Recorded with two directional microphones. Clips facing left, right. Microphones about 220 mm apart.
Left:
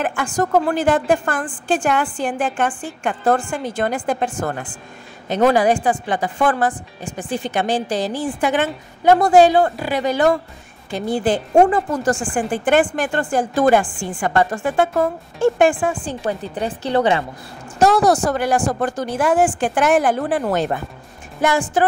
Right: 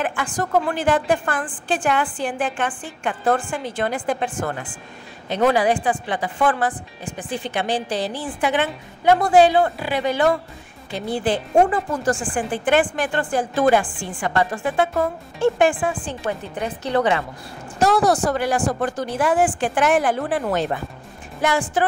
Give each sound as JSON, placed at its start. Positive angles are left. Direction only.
{"t": 0.0, "sound": "speech", "side_deg": 45}
{"t": 17.7, "sound": "speech", "side_deg": 45}